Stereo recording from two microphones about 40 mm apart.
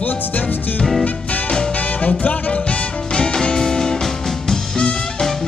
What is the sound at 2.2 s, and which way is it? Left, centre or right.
Music, left.